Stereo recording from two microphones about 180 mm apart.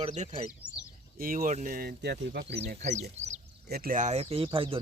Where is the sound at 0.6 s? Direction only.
5° right (ahead or behind).